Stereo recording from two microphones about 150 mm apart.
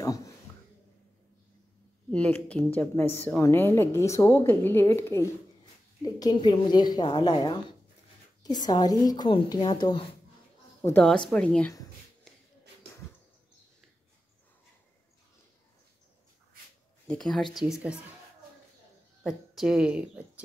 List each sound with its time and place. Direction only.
0.0 s a sound: 20° left (ahead or behind)
2.0 s a woman's voice: 10° left (ahead or behind); by 10.0 s 30° left (ahead or behind)
10.8 s a woman's voice: 15° left (ahead or behind)
12.3 s shuffle: centre (ahead or behind)
17.1 s speech: 5° left (ahead or behind)
19.2 s speech: 5° right (ahead or behind)